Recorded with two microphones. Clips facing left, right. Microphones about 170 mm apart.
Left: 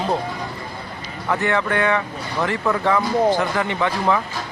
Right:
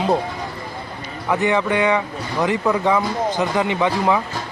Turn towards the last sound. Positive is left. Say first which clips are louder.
# right 2 dB
turn(degrees=-15)  # may be behind; listen again after turning